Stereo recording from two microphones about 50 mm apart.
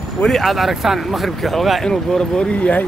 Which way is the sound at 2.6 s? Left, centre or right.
Left.